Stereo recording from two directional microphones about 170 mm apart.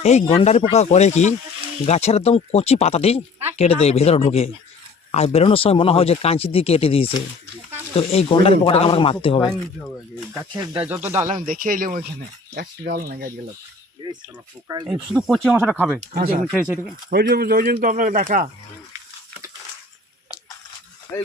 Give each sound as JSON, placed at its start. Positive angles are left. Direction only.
{"t": 0.0, "sound": "speech", "side_deg": 40}
{"t": 10.8, "sound": "speech", "side_deg": -10}
{"t": 11.3, "sound": "speech", "side_deg": -50}
{"t": 14.0, "sound": "speech", "side_deg": -20}
{"t": 15.1, "sound": "speech", "side_deg": 0}
{"t": 16.1, "sound": "speech", "side_deg": -60}
{"t": 16.6, "sound": "speech", "side_deg": -5}
{"t": 17.1, "sound": "speech", "side_deg": -60}